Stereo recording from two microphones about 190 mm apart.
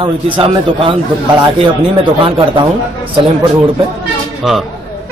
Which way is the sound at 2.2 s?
25° right (ahead or behind).